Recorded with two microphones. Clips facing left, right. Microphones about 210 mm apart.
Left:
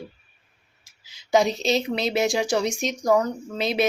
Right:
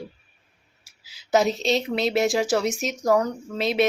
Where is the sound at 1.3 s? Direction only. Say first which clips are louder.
Even; centre (ahead or behind).